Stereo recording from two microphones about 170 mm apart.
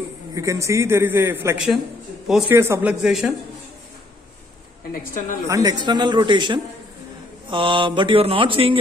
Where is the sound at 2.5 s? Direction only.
15° right (ahead or behind).